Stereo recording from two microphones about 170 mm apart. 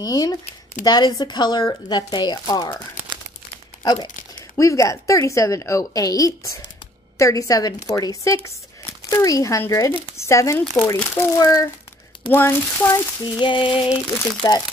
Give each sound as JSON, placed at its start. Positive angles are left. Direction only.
{"t": 0.0, "sound": "a woman's voice", "side_deg": 20}
{"t": 3.8, "sound": "a woman's voice", "side_deg": 25}
{"t": 10.6, "sound": "speech", "side_deg": 5}
{"t": 11.1, "sound": "speech", "side_deg": 20}
{"t": 13.2, "sound": "a woman's voice", "side_deg": 30}